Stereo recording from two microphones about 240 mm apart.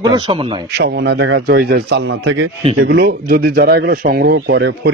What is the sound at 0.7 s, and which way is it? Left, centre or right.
Speech, right.